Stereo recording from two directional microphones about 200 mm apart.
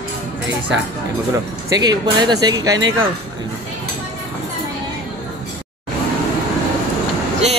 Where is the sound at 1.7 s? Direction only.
20° right (ahead or behind).